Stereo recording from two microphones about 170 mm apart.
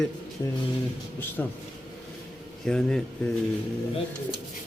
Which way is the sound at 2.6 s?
5° left (ahead or behind).